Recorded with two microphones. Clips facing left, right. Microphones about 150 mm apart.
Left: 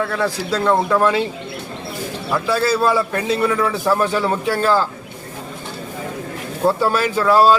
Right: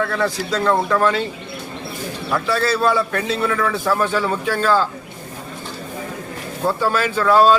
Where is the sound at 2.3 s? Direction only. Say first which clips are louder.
Left 2 dB; 5° left (ahead or behind).